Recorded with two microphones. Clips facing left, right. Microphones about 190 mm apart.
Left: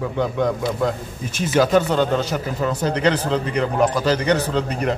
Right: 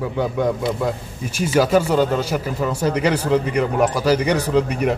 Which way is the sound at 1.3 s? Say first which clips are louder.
Even; 10° right (ahead or behind).